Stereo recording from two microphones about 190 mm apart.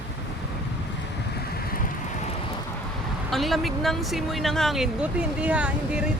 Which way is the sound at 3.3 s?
Centre (ahead or behind).